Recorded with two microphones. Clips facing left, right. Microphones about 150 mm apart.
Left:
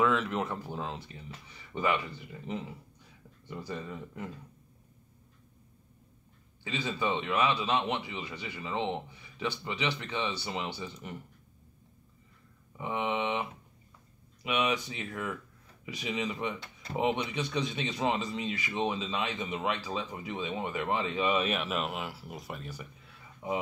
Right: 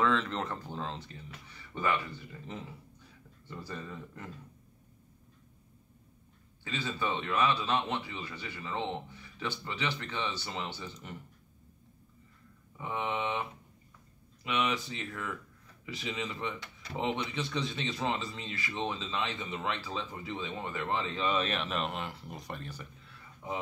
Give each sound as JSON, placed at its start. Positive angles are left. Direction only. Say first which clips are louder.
{"t": 0.0, "sound": "a man's voice", "louder": "left 2 dB", "side_deg": 10}
{"t": 6.6, "sound": "a man's voice", "louder": "left 2 dB", "side_deg": 15}
{"t": 12.7, "sound": "a man's voice", "louder": "left 3 dB", "side_deg": 15}